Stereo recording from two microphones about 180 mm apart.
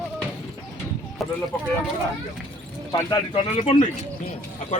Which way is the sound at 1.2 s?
Centre (ahead or behind).